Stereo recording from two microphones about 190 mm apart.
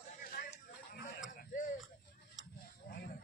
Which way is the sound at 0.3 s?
50° left (ahead or behind).